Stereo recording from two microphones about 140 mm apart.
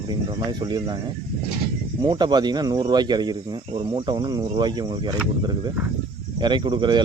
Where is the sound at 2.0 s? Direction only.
30° right (ahead or behind).